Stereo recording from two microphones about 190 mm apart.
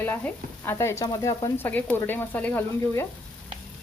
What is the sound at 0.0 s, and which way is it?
Frying, 10° left (ahead or behind).